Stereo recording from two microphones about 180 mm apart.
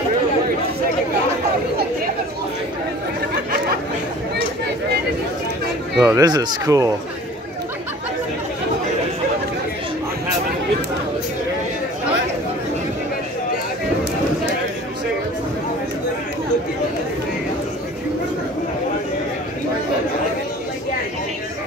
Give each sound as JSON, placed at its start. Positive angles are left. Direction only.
{"t": 5.9, "sound": "speech", "side_deg": -20}